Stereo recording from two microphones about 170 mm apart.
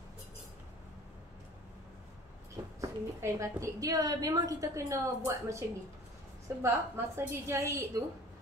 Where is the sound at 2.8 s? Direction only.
20° right (ahead or behind).